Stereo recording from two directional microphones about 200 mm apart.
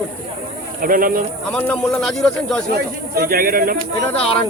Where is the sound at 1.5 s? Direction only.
5° left (ahead or behind).